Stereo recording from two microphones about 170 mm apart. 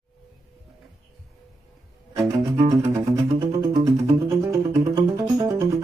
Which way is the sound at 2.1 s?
25° right (ahead or behind).